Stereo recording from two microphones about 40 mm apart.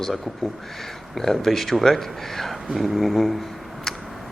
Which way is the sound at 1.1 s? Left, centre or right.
Centre.